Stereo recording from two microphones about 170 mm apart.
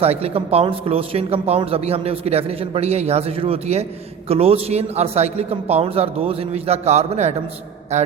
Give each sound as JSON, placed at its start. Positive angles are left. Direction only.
{"t": 0.0, "sound": "speech", "side_deg": -35}